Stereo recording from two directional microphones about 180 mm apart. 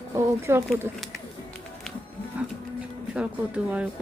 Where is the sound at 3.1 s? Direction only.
5° right (ahead or behind).